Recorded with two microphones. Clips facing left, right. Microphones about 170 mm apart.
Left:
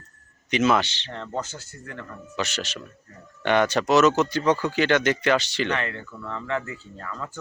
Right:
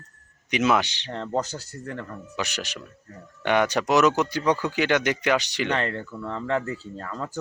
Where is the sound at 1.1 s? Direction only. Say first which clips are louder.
Right 4 dB; 35° right (ahead or behind).